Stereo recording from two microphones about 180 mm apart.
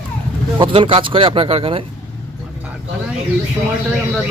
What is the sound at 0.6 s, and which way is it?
Speech, 30° right (ahead or behind).